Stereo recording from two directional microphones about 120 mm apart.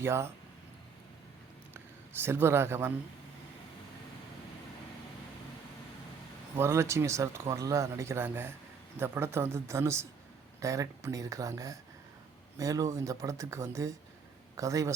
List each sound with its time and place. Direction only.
0.0 s speech: 20° right (ahead or behind)
1.7 s speech: 20° right (ahead or behind)
6.6 s speech: 25° right (ahead or behind)